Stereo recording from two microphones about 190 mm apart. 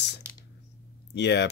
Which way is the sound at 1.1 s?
65° left (ahead or behind).